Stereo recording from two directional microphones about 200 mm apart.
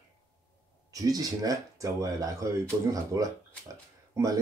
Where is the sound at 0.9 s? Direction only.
20° right (ahead or behind).